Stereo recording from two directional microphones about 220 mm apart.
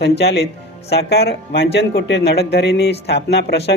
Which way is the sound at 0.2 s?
50° left (ahead or behind).